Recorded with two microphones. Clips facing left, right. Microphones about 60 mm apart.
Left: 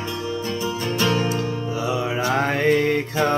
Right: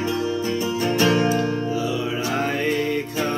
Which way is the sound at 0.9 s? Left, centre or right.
Centre.